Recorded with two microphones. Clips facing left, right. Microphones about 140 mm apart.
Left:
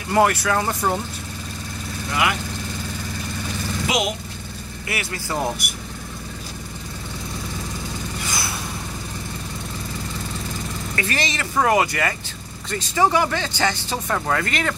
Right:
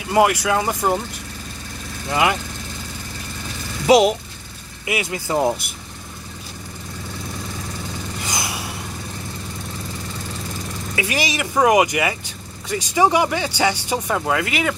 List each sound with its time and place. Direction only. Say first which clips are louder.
0.1 s speech: right 2 dB; 15° right (ahead or behind)
2.0 s speech: right 4 dB; 25° right (ahead or behind)
3.8 s speech: right 11 dB; 35° right (ahead or behind)
4.8 s speech: right 5 dB; 20° right (ahead or behind)
8.3 s vehicle: right 3 dB; 15° right (ahead or behind)
11.0 s speech: right 3 dB; 10° right (ahead or behind)